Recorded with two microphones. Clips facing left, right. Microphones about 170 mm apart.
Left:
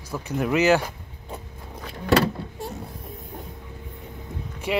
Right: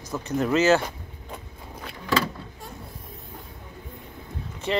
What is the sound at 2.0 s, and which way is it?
Vehicle, 75° left (ahead or behind).